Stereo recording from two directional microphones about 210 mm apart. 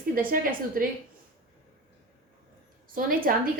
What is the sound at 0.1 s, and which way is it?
Speech, 40° right (ahead or behind).